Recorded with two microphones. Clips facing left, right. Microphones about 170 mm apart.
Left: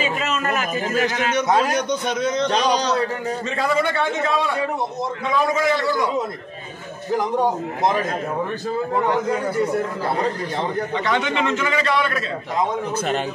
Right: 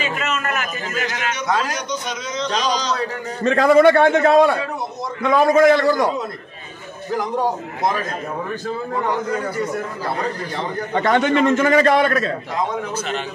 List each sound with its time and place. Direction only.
0.0 s a man's voice: 30° left (ahead or behind)
1.8 s a man's voice: 55° left (ahead or behind)
3.4 s a man's voice: 50° right (ahead or behind)
10.9 s a man's voice: 50° right (ahead or behind)
12.9 s a man's voice: 50° left (ahead or behind)